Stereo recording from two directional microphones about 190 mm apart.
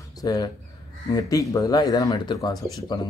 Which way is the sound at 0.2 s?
20° left (ahead or behind).